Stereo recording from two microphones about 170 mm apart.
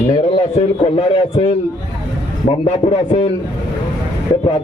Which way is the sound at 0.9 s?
35° left (ahead or behind).